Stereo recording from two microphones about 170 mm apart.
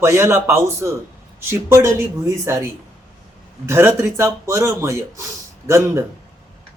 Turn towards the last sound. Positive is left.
turn(degrees=-15)  # may be behind; listen again after turning